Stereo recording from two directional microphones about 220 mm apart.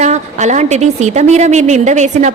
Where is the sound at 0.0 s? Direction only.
30° right (ahead or behind).